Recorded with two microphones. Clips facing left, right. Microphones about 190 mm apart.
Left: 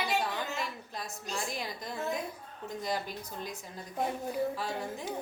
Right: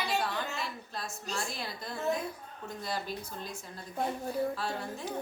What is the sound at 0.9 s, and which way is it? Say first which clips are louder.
A woman's voice: even; 15° left (ahead or behind).